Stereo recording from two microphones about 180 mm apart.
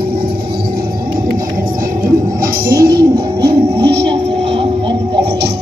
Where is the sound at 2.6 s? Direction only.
55° right (ahead or behind).